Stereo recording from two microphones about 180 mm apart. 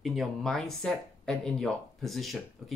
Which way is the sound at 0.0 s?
Centre (ahead or behind).